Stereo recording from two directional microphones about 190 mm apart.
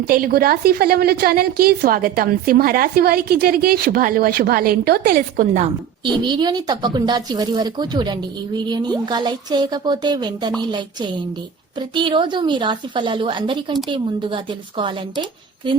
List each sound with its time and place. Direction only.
0.1 s a woman's voice: 50° right (ahead or behind)
6.2 s speech: 25° right (ahead or behind)
11.9 s speech: 25° right (ahead or behind)